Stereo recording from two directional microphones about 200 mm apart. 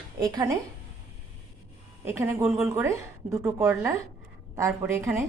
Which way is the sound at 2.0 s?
10° right (ahead or behind).